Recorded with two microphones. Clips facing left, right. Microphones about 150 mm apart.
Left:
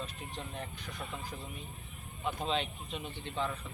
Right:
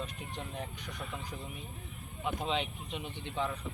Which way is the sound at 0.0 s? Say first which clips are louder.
Right 1 dB; 15° right (ahead or behind).